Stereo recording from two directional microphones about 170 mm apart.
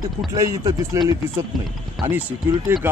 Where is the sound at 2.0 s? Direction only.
Centre (ahead or behind).